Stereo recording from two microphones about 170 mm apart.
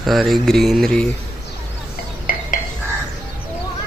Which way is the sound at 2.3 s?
55° left (ahead or behind).